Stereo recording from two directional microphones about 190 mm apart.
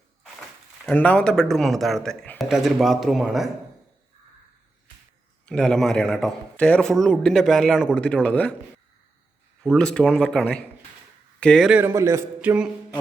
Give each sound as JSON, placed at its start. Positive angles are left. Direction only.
{"t": 0.9, "sound": "a man's voice", "side_deg": 5}
{"t": 5.5, "sound": "a man's voice", "side_deg": 5}
{"t": 9.6, "sound": "a man's voice", "side_deg": 5}
{"t": 11.8, "sound": "a man's voice", "side_deg": -15}